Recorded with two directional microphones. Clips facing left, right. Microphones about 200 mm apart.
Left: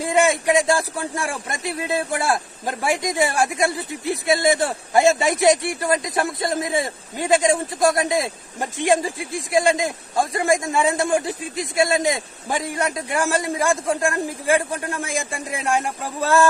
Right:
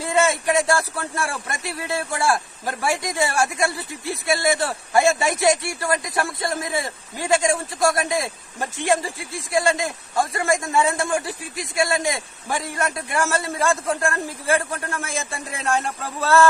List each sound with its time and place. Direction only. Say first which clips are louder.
0.0 s a man's voice: left 2 dB; 15° left (ahead or behind)